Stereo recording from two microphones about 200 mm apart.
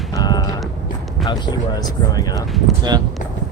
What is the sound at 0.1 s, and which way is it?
Clip-clop, 20° left (ahead or behind).